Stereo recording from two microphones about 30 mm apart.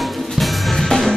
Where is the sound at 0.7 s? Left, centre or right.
Centre.